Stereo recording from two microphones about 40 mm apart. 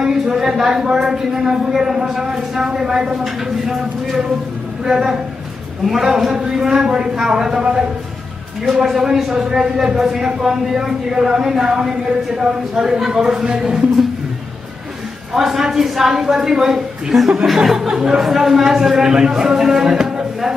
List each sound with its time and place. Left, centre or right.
0.0 s speech: centre
8.6 s speech: centre
15.3 s speech: centre